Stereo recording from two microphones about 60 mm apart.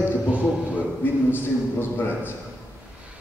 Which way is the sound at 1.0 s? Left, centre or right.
Left.